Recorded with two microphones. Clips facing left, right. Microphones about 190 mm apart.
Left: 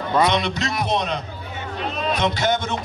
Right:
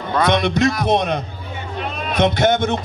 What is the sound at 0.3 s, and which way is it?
A man's voice, 50° right (ahead or behind).